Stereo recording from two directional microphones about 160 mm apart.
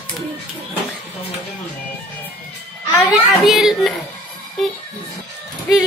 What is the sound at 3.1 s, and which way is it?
Speech, centre (ahead or behind).